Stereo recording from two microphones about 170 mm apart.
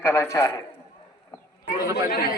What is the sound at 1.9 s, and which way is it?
Speech, 65° left (ahead or behind).